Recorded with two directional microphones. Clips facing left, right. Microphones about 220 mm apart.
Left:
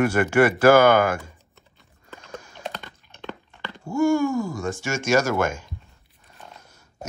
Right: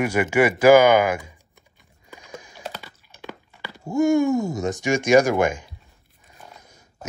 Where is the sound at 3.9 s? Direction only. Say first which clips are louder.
Right 2 dB; 20° right (ahead or behind).